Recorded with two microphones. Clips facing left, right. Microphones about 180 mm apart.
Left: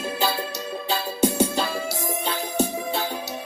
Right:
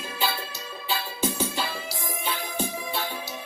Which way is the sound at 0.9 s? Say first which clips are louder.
Left 6 dB; 45° left (ahead or behind).